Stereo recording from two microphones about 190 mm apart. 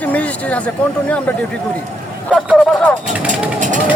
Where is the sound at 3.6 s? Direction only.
40° right (ahead or behind).